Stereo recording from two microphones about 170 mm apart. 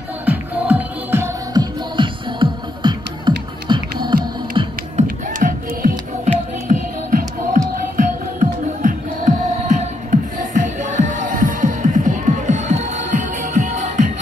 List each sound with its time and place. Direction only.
0.2 s music: 10° right (ahead or behind); by 4.7 s 30° right (ahead or behind)
4.9 s music: 50° right (ahead or behind)